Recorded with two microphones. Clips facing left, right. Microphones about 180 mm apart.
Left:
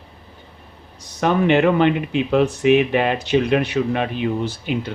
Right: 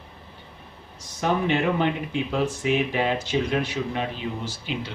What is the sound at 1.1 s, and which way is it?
Speech, 65° left (ahead or behind).